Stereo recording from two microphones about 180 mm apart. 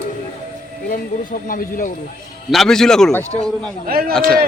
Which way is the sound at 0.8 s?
50° left (ahead or behind).